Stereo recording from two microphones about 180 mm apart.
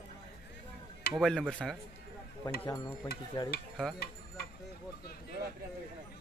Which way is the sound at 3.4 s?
25° left (ahead or behind).